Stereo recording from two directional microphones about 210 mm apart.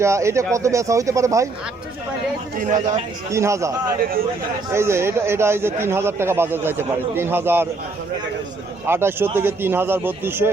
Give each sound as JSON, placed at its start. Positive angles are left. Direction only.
{"t": 0.0, "sound": "a man's voice", "side_deg": -15}
{"t": 2.6, "sound": "speech", "side_deg": -35}
{"t": 3.3, "sound": "a man's voice", "side_deg": -15}
{"t": 4.7, "sound": "a man's voice", "side_deg": -10}
{"t": 8.9, "sound": "a man's voice", "side_deg": -10}